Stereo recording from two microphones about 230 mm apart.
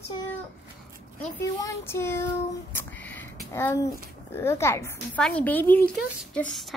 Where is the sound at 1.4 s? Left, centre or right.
Centre.